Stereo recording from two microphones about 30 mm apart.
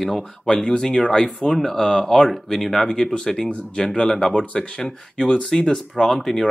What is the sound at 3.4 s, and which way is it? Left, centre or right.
Speech, left.